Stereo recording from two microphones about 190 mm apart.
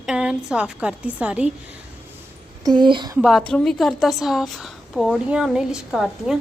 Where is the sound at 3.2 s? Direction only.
Centre (ahead or behind).